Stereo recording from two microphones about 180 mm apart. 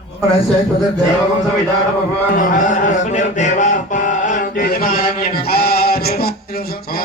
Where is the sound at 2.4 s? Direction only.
45° left (ahead or behind).